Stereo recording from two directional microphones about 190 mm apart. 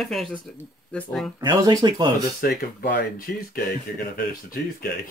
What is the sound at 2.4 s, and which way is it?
Speech, 55° left (ahead or behind).